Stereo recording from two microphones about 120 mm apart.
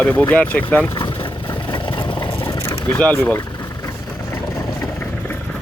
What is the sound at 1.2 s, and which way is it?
Vehicle, 40° left (ahead or behind).